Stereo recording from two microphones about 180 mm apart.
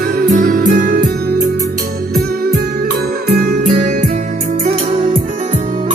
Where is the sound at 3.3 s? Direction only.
55° right (ahead or behind).